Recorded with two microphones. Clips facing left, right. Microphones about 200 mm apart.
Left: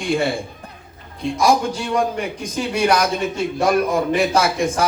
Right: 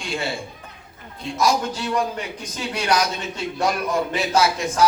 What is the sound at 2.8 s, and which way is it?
A man's voice, 55° left (ahead or behind).